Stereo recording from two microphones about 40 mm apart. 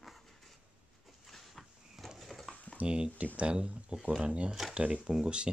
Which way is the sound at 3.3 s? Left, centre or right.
Right.